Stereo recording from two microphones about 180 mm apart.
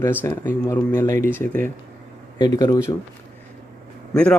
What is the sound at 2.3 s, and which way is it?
Speech, 20° left (ahead or behind).